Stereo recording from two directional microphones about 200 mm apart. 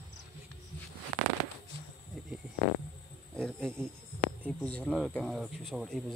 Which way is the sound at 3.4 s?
5° left (ahead or behind).